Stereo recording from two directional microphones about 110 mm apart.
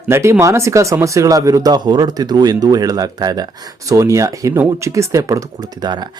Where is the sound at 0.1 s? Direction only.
25° right (ahead or behind).